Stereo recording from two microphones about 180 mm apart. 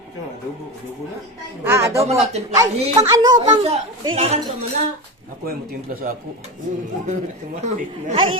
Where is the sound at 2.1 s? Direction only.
35° right (ahead or behind).